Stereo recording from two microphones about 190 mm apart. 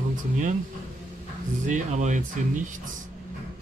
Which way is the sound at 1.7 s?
40° right (ahead or behind).